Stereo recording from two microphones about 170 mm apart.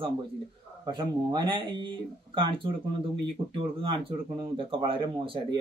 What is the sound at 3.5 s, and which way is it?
A man's voice, 30° right (ahead or behind).